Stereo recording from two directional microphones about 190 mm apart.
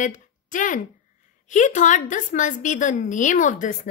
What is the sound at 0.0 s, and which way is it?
Speech, 45° left (ahead or behind).